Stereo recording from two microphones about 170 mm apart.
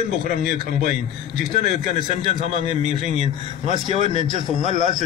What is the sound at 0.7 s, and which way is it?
Speech, 45° right (ahead or behind).